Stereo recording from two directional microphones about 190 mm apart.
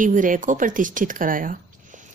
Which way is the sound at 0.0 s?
45° right (ahead or behind).